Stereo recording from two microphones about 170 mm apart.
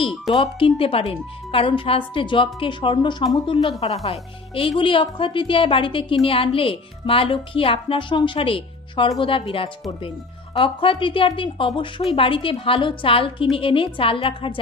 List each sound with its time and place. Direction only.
0.3 s a woman's voice: 35° left (ahead or behind)